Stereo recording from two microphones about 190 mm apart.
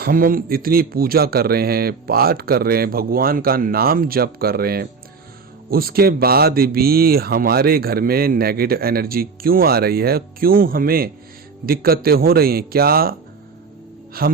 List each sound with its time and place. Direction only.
0.0 s speech: 50° right (ahead or behind)
14.2 s speech: 50° right (ahead or behind)